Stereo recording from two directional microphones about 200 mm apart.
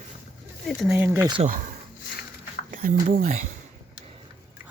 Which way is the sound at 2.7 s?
45° right (ahead or behind).